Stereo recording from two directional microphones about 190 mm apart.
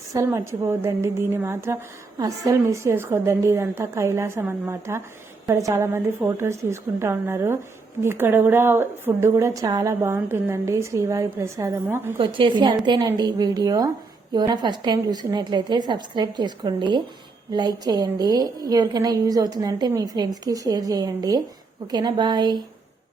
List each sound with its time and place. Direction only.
0.1 s a woman's voice: 15° right (ahead or behind)
12.1 s a woman's voice: 25° right (ahead or behind)